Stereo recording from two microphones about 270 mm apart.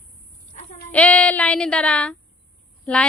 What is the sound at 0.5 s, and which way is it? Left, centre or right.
Sheep, left.